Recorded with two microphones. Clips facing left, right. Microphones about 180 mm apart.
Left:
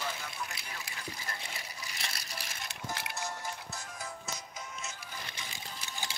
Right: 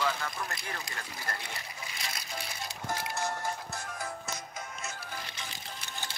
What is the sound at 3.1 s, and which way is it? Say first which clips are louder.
Music: right 5 dB; 55° right (ahead or behind).